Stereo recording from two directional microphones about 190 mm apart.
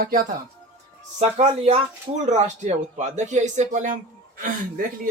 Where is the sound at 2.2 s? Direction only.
40° right (ahead or behind).